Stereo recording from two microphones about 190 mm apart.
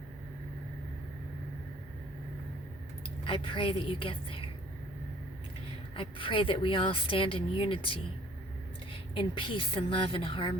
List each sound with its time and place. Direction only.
3.2 s speech: 25° left (ahead or behind)
6.0 s speech: 25° left (ahead or behind)